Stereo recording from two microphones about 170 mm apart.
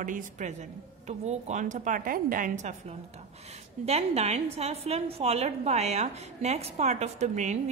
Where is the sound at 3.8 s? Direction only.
40° right (ahead or behind).